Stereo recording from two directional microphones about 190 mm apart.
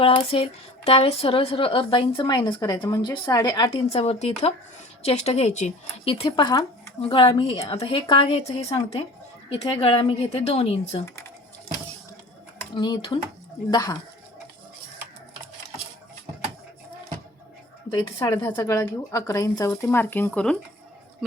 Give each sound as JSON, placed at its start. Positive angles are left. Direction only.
{"t": 0.0, "sound": "speech", "side_deg": 30}
{"t": 12.7, "sound": "speech", "side_deg": 25}
{"t": 17.9, "sound": "speech", "side_deg": 15}